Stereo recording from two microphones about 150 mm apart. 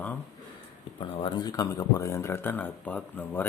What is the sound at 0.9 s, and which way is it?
Speech, 35° left (ahead or behind).